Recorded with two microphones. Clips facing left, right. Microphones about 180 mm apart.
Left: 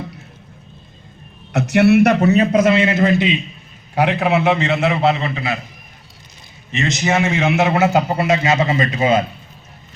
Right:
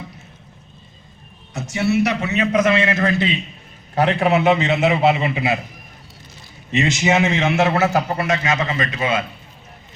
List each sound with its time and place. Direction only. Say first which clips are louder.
1.5 s a man's voice: left 7 dB; 65° left (ahead or behind); by 3.3 s 20° left (ahead or behind)
3.9 s a man's voice: even; 5° left (ahead or behind); by 5.5 s 15° right (ahead or behind)
7.0 s a man's voice: left 2 dB; centre (ahead or behind); by 9.2 s 30° left (ahead or behind)